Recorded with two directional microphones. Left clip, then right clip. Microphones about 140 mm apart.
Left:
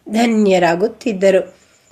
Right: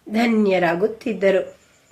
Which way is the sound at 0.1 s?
40° left (ahead or behind).